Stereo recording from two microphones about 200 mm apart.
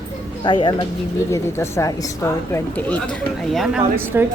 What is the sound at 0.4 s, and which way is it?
A woman's voice, 20° left (ahead or behind).